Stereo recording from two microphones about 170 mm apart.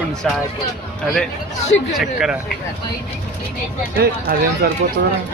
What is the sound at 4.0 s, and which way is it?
Speech, 65° right (ahead or behind).